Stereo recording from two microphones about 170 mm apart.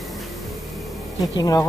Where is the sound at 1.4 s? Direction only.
20° left (ahead or behind).